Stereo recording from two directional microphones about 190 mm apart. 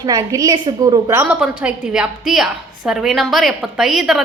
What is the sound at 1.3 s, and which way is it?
A woman's voice, 5° right (ahead or behind).